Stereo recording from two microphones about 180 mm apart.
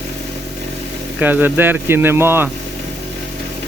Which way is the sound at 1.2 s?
10° right (ahead or behind).